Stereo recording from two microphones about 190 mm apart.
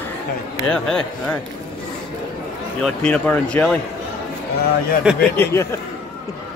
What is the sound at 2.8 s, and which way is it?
Speech, 5° left (ahead or behind).